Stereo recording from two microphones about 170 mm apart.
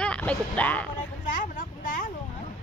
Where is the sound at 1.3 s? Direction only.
50° left (ahead or behind).